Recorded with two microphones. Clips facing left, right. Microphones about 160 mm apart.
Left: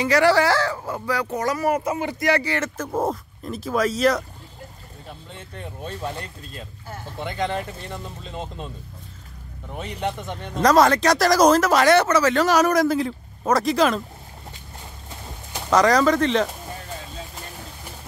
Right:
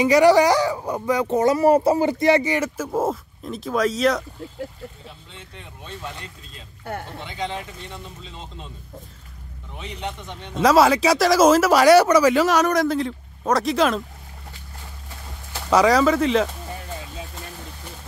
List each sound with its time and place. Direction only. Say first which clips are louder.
0.0 s speech: right 3 dB; 15° right (ahead or behind)
2.9 s speech: left 1 dB; centre (ahead or behind)
5.3 s speech: left 5 dB; 50° left (ahead or behind)
9.8 s speech: left 4 dB; 45° left (ahead or behind)
10.6 s speech: right 1 dB; 5° right (ahead or behind)
12.4 s speech: left 1 dB; centre (ahead or behind)
15.7 s speech: right 1 dB; 5° right (ahead or behind)